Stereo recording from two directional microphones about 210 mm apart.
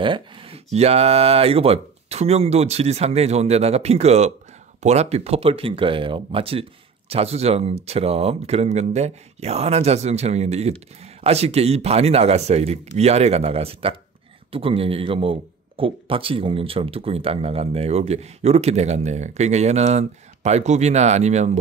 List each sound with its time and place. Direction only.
0.0 s a man's voice: 25° right (ahead or behind)